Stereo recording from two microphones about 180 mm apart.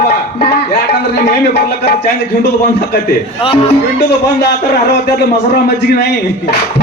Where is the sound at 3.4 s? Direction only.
30° left (ahead or behind).